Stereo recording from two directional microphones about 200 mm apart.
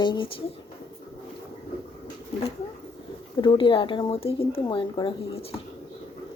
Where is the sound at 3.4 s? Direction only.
25° left (ahead or behind).